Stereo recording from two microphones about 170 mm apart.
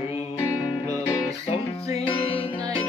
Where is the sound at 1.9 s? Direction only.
40° left (ahead or behind).